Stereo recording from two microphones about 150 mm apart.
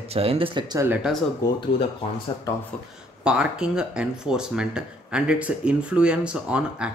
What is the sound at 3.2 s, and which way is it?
Speech, 5° right (ahead or behind).